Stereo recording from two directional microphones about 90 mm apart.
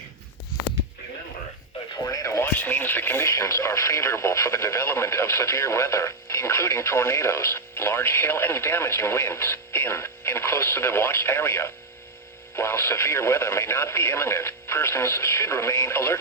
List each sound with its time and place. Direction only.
1.9 s radio: 45° left (ahead or behind)
2.5 s radio: 20° left (ahead or behind)
3.2 s speech: 35° left (ahead or behind)